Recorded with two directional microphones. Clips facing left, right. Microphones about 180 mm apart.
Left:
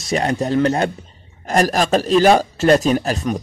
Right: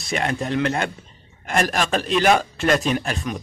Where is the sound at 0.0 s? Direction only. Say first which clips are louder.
Left 5 dB; 35° left (ahead or behind).